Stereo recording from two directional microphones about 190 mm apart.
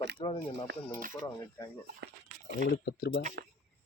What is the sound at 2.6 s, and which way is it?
Speech, 60° left (ahead or behind).